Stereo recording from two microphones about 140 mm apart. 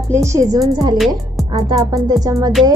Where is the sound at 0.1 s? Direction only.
20° right (ahead or behind).